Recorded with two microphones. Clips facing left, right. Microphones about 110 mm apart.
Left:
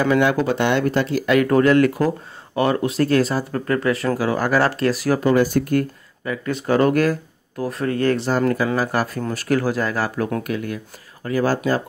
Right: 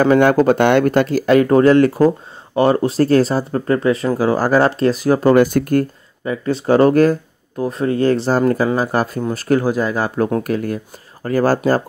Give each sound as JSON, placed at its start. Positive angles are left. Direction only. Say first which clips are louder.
{"t": 0.0, "sound": "speech", "louder": "right 6 dB", "side_deg": -45}
{"t": 1.2, "sound": "speech", "louder": "right 4 dB", "side_deg": -30}
{"t": 5.2, "sound": "speech", "louder": "right 5 dB", "side_deg": -60}
{"t": 5.8, "sound": "speech", "louder": "right 4 dB", "side_deg": -30}
{"t": 10.2, "sound": "speech", "louder": "right 5 dB", "side_deg": -35}